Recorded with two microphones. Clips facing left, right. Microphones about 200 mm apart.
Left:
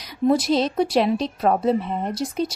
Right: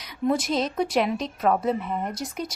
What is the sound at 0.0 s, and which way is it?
Speech, 35° left (ahead or behind).